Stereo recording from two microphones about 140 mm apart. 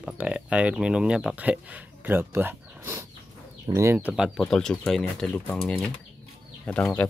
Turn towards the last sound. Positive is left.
turn(degrees=10)  # may be behind; listen again after turning